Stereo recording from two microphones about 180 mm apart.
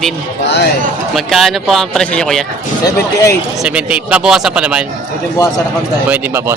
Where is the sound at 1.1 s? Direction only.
Centre (ahead or behind).